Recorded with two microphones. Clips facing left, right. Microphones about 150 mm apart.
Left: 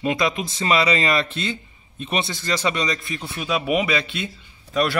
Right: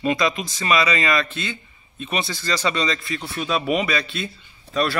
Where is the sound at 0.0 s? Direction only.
20° left (ahead or behind).